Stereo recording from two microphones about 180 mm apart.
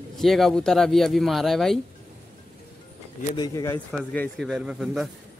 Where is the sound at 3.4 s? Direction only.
20° left (ahead or behind).